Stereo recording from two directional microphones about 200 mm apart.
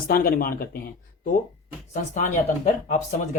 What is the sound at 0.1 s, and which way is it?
Speech, 45° left (ahead or behind).